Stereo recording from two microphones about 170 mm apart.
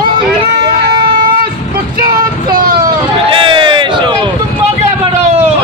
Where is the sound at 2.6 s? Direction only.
55° right (ahead or behind).